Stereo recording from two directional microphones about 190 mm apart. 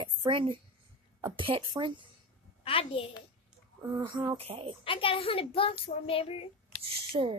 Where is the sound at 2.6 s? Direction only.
30° left (ahead or behind).